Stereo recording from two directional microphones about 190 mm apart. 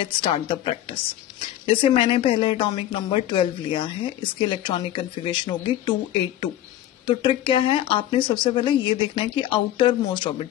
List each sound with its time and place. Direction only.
0.1 s speech: 25° left (ahead or behind)
7.1 s speech: 25° left (ahead or behind)